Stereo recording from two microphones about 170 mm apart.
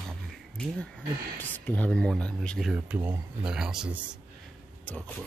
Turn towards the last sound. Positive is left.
turn(degrees=10)  # may be behind; listen again after turning